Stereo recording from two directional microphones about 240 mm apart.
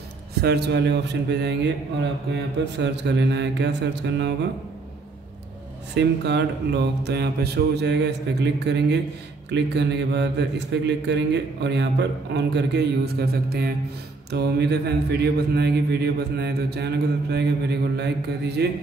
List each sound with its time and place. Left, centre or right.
0.4 s a man's voice: right
5.9 s a man's voice: right